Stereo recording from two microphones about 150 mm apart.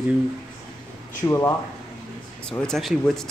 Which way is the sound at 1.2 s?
20° left (ahead or behind).